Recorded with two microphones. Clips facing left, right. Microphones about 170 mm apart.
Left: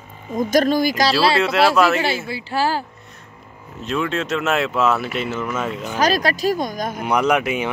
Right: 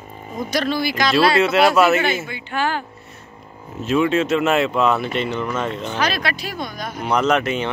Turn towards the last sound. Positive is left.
turn(degrees=10)  # may be behind; listen again after turning